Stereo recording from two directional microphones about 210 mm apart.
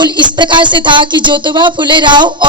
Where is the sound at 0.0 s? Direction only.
20° right (ahead or behind).